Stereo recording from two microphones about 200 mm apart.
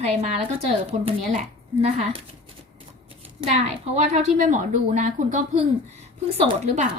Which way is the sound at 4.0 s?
35° right (ahead or behind).